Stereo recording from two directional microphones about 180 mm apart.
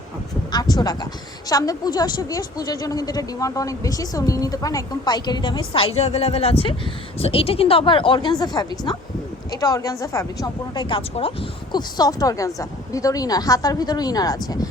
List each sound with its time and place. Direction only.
0.5 s a woman's voice: 20° left (ahead or behind)